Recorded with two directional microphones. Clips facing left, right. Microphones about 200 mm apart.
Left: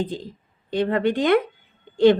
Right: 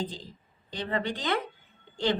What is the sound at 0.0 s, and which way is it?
Speech, 55° left (ahead or behind).